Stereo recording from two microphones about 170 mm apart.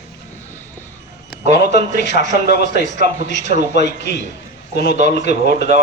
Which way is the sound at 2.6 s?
50° right (ahead or behind).